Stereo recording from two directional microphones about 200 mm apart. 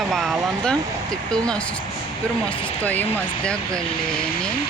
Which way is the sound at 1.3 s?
5° left (ahead or behind).